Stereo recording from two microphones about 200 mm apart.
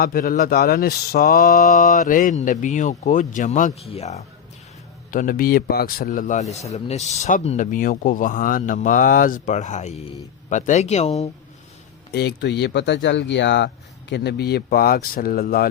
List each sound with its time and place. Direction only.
0.0 s a man's voice: 45° left (ahead or behind)
5.1 s a man's voice: 45° left (ahead or behind)
12.1 s speech: 55° left (ahead or behind)